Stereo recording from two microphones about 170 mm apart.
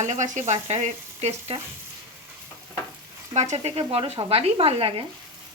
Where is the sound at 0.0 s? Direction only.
45° right (ahead or behind).